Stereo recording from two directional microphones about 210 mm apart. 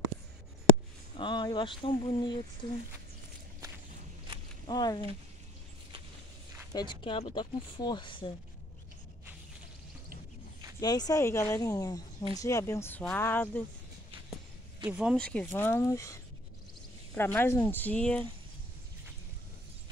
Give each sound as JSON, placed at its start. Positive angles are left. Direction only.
{"t": 1.1, "sound": "speech", "side_deg": 20}
{"t": 4.6, "sound": "speech", "side_deg": 20}
{"t": 6.7, "sound": "speech", "side_deg": 20}
{"t": 10.8, "sound": "speech", "side_deg": 20}
{"t": 14.9, "sound": "speech", "side_deg": -5}